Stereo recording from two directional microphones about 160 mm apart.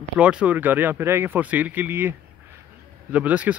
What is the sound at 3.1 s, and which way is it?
Speech, 10° right (ahead or behind).